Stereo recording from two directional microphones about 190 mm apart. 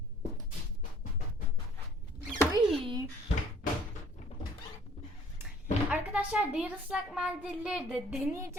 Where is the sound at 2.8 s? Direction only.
25° right (ahead or behind).